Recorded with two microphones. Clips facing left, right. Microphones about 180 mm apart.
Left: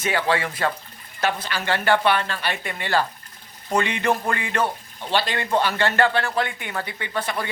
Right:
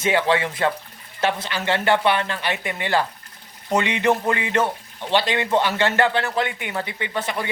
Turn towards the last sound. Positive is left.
turn(degrees=-20)  # may be behind; listen again after turning